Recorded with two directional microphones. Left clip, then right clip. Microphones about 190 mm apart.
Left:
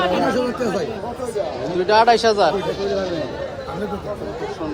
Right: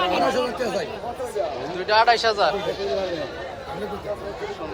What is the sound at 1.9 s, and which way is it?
Speech, 25° left (ahead or behind).